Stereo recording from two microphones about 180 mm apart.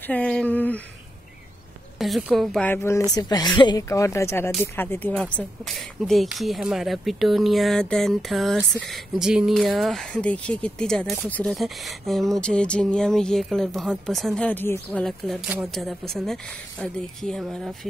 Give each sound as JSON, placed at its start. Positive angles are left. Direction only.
{"t": 0.0, "sound": "speech", "side_deg": 5}
{"t": 2.0, "sound": "speech", "side_deg": 0}
{"t": 2.7, "sound": "a woman's voice", "side_deg": 15}